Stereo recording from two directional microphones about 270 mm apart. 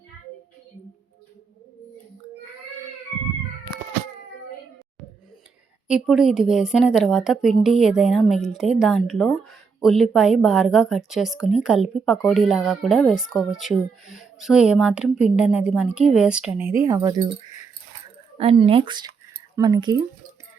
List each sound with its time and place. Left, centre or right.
5.9 s a woman's voice: centre
18.3 s speech: right